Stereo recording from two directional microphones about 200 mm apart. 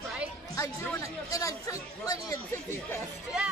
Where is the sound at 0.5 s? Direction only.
15° left (ahead or behind).